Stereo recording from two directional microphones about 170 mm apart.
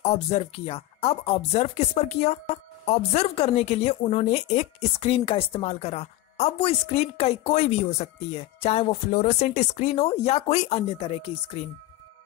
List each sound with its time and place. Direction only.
0.0 s speech: 35° left (ahead or behind)